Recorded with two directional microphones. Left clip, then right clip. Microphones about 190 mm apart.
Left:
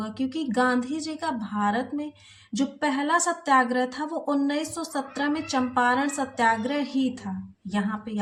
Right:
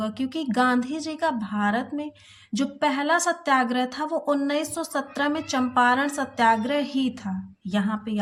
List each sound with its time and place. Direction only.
0.0 s a woman's voice: 30° right (ahead or behind)